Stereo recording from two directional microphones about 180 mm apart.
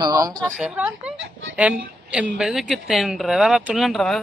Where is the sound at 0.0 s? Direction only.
20° right (ahead or behind).